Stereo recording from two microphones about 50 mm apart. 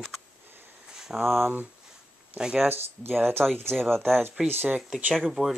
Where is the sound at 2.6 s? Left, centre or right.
Right.